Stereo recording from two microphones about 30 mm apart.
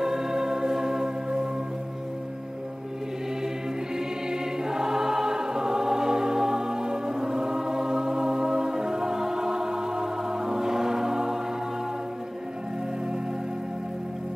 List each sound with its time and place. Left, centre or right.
0.0 s music: centre
3.9 s choir: right